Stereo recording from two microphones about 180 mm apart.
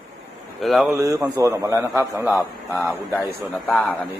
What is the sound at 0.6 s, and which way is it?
Speech, centre (ahead or behind).